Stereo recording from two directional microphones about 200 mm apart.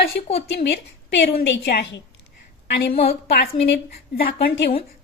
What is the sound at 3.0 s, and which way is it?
A woman's voice, 50° left (ahead or behind).